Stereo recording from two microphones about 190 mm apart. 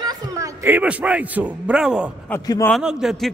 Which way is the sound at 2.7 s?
5° right (ahead or behind).